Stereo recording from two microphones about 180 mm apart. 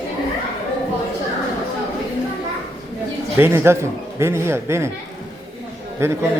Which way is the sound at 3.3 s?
15° right (ahead or behind).